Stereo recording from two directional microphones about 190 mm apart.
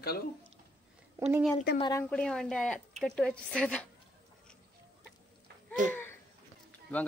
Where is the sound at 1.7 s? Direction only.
20° left (ahead or behind).